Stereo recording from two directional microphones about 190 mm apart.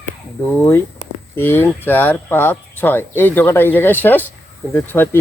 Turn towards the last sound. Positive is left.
turn(degrees=10)  # may be behind; listen again after turning